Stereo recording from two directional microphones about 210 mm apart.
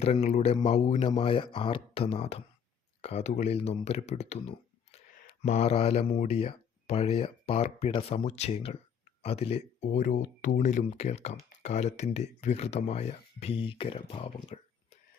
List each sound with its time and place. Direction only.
0.0 s speech: 30° left (ahead or behind)